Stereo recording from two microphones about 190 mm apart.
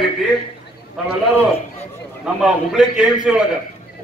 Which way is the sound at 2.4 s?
5° right (ahead or behind).